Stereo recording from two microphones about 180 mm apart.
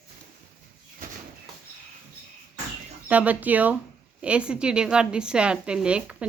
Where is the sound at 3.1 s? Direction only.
10° right (ahead or behind).